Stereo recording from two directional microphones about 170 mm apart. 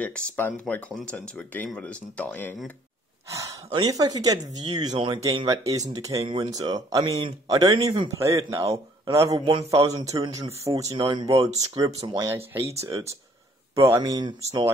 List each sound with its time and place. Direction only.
0.0 s speech: 5° left (ahead or behind)
3.3 s speech: 20° right (ahead or behind)
7.1 s a man's voice: 35° right (ahead or behind)
7.4 s speech: 25° right (ahead or behind)
8.6 s a man's voice: 30° right (ahead or behind)
9.8 s speech: 20° right (ahead or behind)